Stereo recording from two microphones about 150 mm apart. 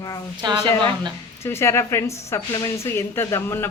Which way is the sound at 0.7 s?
15° left (ahead or behind).